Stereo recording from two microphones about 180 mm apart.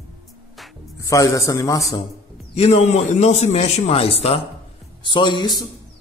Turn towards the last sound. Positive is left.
turn(degrees=25)  # may be behind; listen again after turning